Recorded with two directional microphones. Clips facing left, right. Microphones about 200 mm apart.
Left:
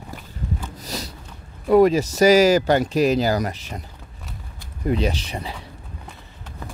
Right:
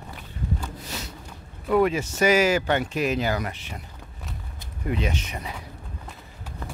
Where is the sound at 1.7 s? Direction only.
40° left (ahead or behind).